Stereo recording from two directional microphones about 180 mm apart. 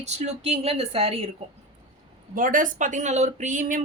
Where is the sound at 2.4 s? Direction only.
50° right (ahead or behind).